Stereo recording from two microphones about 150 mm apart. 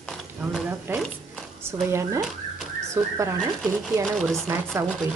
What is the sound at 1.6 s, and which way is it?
A woman's voice, 20° right (ahead or behind).